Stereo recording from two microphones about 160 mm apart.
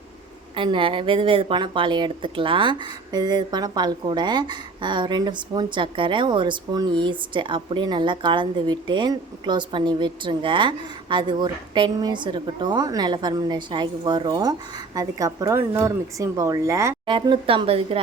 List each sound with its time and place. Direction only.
0.5 s a woman's voice: 30° right (ahead or behind)
17.1 s speech: 30° right (ahead or behind)